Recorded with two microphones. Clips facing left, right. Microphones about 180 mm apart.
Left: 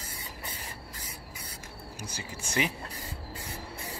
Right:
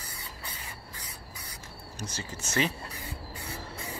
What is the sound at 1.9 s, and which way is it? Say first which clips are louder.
Speech: right 3 dB; 10° left (ahead or behind).